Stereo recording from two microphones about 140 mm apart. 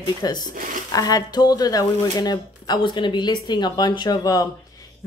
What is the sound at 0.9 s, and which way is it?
Speech, 25° left (ahead or behind).